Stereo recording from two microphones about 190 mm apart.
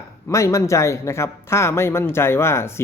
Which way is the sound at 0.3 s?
15° left (ahead or behind).